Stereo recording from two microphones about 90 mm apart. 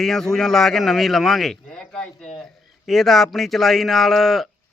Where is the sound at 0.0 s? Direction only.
5° left (ahead or behind).